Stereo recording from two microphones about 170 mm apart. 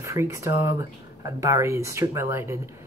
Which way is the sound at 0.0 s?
15° right (ahead or behind).